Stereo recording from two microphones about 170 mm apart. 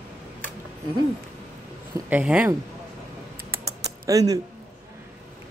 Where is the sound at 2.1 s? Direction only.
5° right (ahead or behind).